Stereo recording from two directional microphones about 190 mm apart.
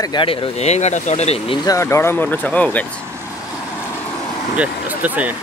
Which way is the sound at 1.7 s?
15° left (ahead or behind).